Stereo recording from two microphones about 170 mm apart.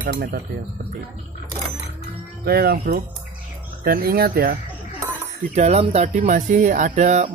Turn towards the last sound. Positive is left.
turn(degrees=-45)  # may be behind; listen again after turning